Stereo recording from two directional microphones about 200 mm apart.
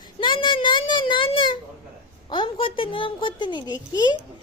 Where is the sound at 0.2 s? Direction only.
25° left (ahead or behind).